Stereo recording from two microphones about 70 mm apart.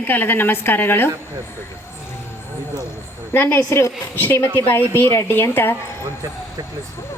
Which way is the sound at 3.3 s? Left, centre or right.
Left.